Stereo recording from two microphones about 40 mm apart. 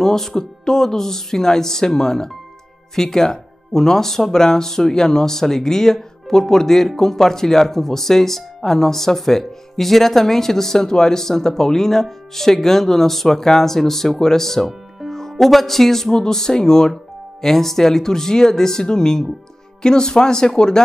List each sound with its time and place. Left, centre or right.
0.0 s speech: centre